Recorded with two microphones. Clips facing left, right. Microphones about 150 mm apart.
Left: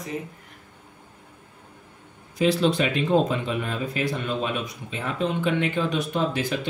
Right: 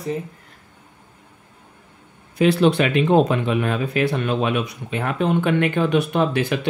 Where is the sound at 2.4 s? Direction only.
65° right (ahead or behind).